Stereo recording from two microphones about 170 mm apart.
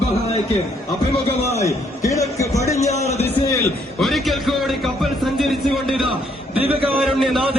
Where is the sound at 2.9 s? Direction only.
40° left (ahead or behind).